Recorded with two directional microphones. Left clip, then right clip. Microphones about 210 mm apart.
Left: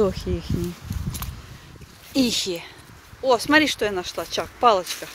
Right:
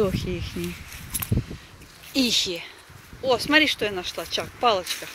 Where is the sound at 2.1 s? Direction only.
20° left (ahead or behind).